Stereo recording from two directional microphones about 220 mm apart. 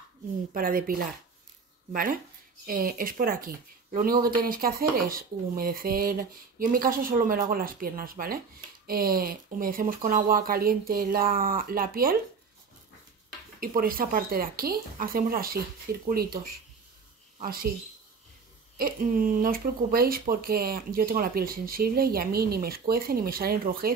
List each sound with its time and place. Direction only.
0.5 s speech: 40° right (ahead or behind)
13.6 s speech: 40° right (ahead or behind)
18.8 s speech: 40° right (ahead or behind)